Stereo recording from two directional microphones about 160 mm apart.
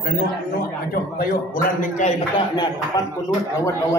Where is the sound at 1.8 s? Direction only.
50° left (ahead or behind).